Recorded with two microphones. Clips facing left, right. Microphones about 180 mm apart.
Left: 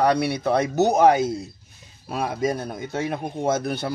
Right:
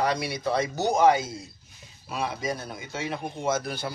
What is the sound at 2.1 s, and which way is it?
A man's voice, 50° left (ahead or behind).